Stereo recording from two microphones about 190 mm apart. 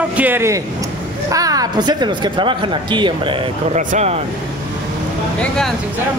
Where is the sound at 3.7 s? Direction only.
35° right (ahead or behind).